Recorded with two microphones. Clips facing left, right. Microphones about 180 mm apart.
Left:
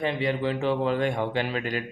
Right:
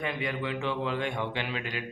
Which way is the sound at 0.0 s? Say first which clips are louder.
Left 6 dB; 30° left (ahead or behind).